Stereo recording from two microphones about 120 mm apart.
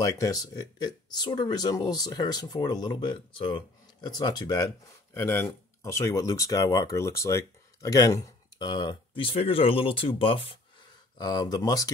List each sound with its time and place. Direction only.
0.0 s speech: 30° left (ahead or behind)
8.6 s speech: 40° left (ahead or behind)
11.1 s speech: 35° left (ahead or behind)